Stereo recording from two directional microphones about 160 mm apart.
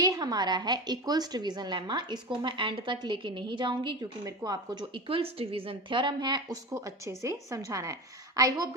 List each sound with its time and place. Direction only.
0.0 s a woman's voice: 25° right (ahead or behind)